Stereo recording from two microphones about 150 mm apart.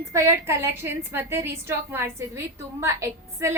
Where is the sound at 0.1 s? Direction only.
20° right (ahead or behind).